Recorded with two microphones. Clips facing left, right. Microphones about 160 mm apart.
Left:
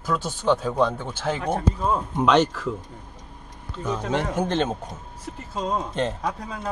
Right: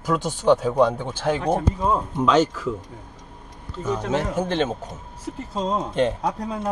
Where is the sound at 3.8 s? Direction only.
5° right (ahead or behind).